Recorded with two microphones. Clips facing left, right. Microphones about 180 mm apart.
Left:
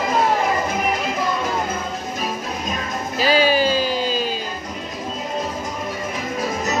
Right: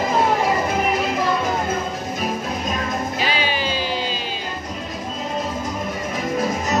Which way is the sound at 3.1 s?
40° left (ahead or behind).